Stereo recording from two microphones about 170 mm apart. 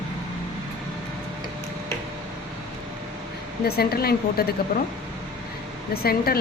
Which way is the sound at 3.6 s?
65° left (ahead or behind).